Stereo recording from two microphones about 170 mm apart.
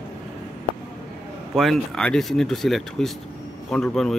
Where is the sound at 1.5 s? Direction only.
Centre (ahead or behind).